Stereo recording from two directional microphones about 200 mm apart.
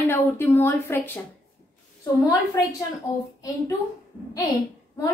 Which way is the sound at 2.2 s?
20° left (ahead or behind).